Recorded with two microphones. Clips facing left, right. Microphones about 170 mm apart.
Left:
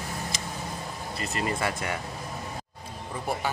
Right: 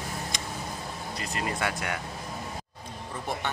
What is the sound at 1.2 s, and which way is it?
Cutlery, centre (ahead or behind).